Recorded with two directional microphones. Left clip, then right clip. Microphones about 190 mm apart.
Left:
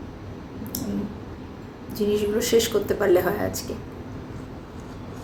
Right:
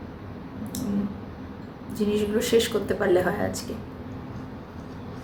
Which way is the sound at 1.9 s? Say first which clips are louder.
Left 2 dB; centre (ahead or behind).